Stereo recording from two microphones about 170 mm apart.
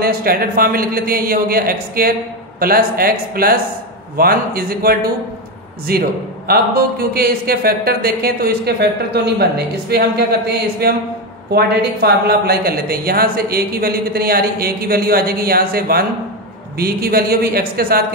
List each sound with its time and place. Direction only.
0.0 s speech: 60° right (ahead or behind)